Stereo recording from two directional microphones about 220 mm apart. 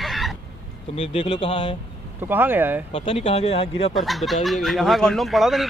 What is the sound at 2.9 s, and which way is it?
Speech, 25° left (ahead or behind).